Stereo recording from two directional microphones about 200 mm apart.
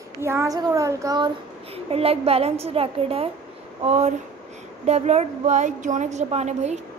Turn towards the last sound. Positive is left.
turn(degrees=-35)  # may be behind; listen again after turning